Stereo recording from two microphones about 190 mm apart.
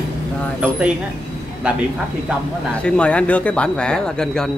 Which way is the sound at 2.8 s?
5° left (ahead or behind).